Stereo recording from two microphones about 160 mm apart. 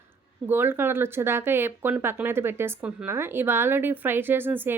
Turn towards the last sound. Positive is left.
turn(degrees=-10)  # may be behind; listen again after turning